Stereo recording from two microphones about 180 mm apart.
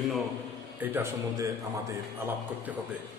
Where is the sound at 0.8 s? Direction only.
15° right (ahead or behind).